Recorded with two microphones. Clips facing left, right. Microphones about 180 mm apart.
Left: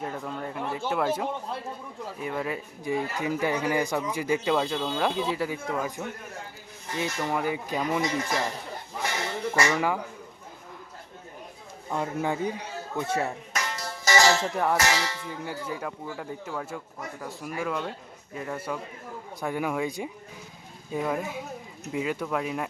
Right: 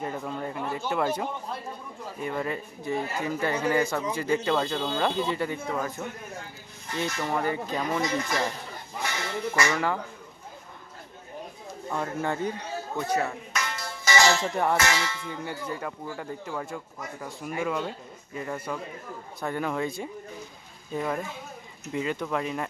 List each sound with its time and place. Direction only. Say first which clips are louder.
0.0 s speech: right 1 dB; centre (ahead or behind)
2.8 s speech: left 1 dB; 15° left (ahead or behind)
9.6 s speech: left 1 dB; 10° left (ahead or behind)
11.9 s a man's voice: left 1 dB; 15° left (ahead or behind)
13.1 s speech: right 2 dB; 30° left (ahead or behind)
13.7 s music: left 1 dB; 40° left (ahead or behind)
14.5 s speech: even; centre (ahead or behind)
14.8 s music: left 1 dB; 35° left (ahead or behind)
15.3 s speech: even; 5° left (ahead or behind)